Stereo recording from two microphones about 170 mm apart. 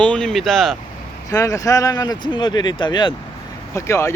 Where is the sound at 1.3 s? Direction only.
20° left (ahead or behind).